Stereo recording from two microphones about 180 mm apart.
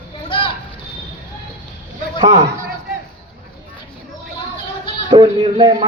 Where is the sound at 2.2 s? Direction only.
20° right (ahead or behind).